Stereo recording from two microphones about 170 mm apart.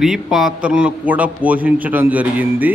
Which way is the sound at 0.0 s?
Centre (ahead or behind).